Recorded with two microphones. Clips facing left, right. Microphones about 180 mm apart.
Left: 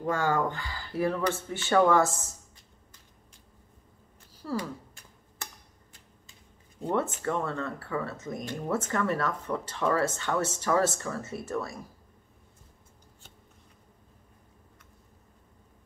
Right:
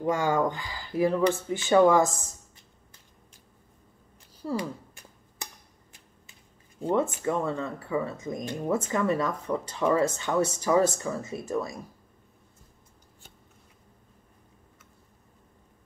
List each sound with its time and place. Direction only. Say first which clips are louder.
0.0 s speech: right 2 dB; 15° right (ahead or behind)
4.4 s speech: right 2 dB; 20° right (ahead or behind)
6.9 s speech: right 3 dB; 15° right (ahead or behind)